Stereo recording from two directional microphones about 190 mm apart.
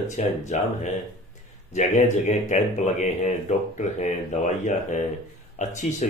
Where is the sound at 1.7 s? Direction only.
40° left (ahead or behind).